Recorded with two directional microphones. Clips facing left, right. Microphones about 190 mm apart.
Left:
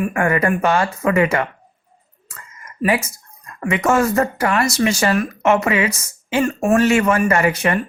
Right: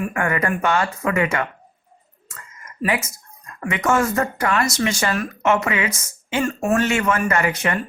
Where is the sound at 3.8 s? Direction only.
30° left (ahead or behind).